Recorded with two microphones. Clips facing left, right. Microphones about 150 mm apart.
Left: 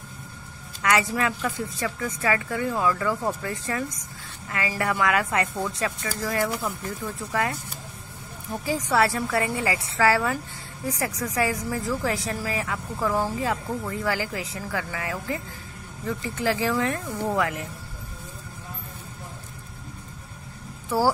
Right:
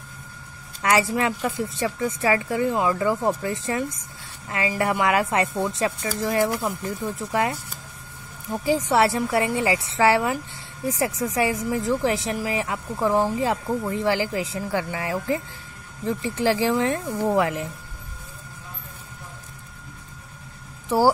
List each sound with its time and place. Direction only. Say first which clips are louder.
0.8 s speech: right 2 dB; 30° right (ahead or behind)
8.6 s speech: right 3 dB; 25° right (ahead or behind)
20.9 s speech: right 3 dB; 25° right (ahead or behind)